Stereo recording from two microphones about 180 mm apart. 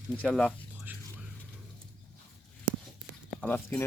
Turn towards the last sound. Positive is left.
turn(degrees=10)  # may be behind; listen again after turning